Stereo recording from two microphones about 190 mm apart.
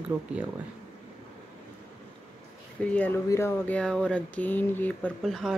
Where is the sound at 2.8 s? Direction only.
5° left (ahead or behind).